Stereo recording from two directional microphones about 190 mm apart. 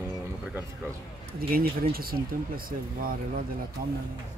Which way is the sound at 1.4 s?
50° right (ahead or behind).